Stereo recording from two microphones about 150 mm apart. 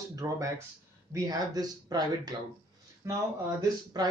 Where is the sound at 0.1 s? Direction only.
20° right (ahead or behind).